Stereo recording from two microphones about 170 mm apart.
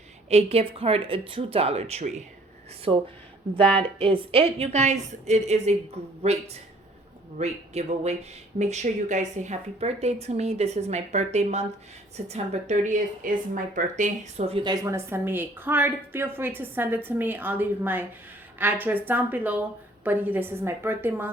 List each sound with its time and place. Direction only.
0.3 s speech: 35° right (ahead or behind)
4.0 s a woman's voice: 30° right (ahead or behind); by 21.2 s 15° right (ahead or behind)